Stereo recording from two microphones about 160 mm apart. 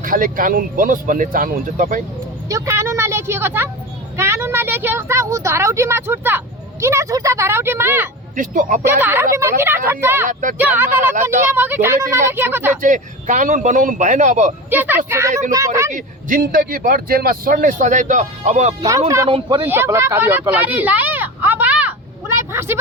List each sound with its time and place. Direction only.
0.0 s speech: 60° right (ahead or behind)
2.5 s a woman's voice: 20° right (ahead or behind)
8.4 s speech: 55° right (ahead or behind)
8.8 s a woman's voice: 15° right (ahead or behind)
12.8 s speech: 55° right (ahead or behind)
14.7 s a woman's voice: 10° right (ahead or behind)
15.9 s speech: 55° right (ahead or behind)
18.9 s speech: 20° right (ahead or behind)
22.4 s vehicle: 15° right (ahead or behind)